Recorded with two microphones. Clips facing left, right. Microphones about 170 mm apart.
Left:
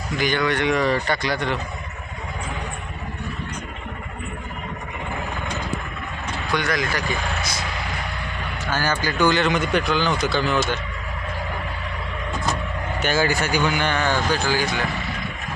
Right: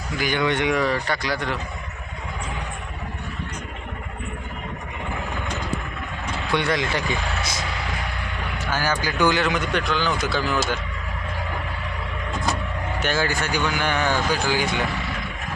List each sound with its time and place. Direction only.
0.2 s speech: 10° right (ahead or behind)
0.4 s speech: 20° right (ahead or behind)
0.7 s speech: 5° right (ahead or behind)
6.5 s speech: 30° right (ahead or behind)
8.7 s speech: 10° right (ahead or behind)
13.0 s speech: 5° left (ahead or behind)
13.8 s speech: 10° right (ahead or behind)